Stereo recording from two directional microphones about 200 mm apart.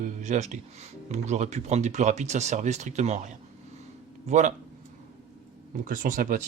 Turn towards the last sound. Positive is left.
turn(degrees=-40)  # may be behind; listen again after turning